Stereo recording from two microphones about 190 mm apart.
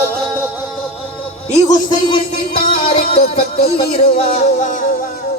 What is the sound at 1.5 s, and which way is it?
Music, 40° left (ahead or behind).